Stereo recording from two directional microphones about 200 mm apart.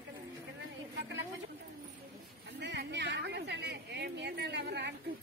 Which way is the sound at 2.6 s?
60° right (ahead or behind).